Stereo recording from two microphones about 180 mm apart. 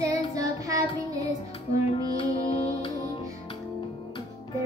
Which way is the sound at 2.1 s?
35° left (ahead or behind).